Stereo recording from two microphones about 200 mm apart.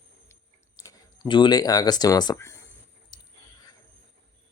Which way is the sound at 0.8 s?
20° left (ahead or behind).